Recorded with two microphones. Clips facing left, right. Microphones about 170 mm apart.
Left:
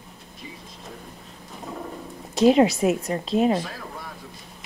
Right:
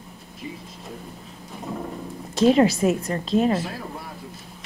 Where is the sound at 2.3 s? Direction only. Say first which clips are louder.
Even; centre (ahead or behind).